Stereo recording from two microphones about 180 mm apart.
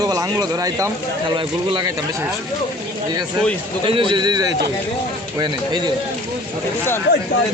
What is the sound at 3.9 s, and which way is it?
Speech, 30° right (ahead or behind).